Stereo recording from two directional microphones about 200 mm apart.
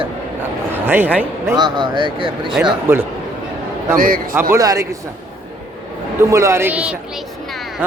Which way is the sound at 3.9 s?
45° right (ahead or behind).